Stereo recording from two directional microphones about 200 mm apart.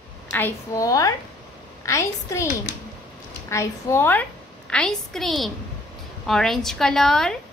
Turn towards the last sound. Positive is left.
turn(degrees=0)  # may be behind; listen again after turning